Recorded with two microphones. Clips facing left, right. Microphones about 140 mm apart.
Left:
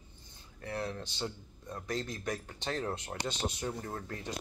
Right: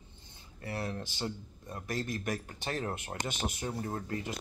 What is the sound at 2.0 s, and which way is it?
Speech, 55° right (ahead or behind).